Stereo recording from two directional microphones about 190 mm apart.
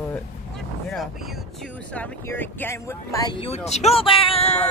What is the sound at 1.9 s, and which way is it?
Speech, 10° left (ahead or behind).